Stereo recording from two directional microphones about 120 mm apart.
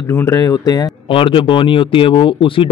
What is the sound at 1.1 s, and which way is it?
Speech, 45° left (ahead or behind).